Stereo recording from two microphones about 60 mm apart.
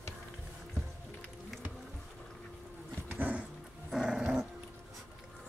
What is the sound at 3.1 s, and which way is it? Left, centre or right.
Dog, right.